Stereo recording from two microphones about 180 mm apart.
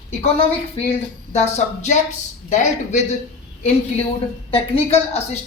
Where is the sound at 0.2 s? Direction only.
35° left (ahead or behind).